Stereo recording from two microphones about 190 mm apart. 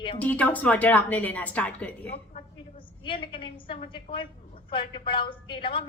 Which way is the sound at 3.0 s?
25° left (ahead or behind).